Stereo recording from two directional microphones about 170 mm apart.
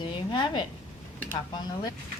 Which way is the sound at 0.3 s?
25° left (ahead or behind).